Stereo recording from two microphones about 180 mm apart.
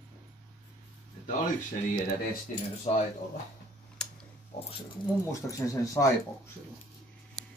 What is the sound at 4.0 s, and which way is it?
Tick-tock, 5° left (ahead or behind).